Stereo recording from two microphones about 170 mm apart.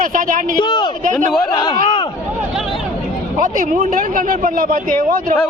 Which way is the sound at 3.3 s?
50° right (ahead or behind).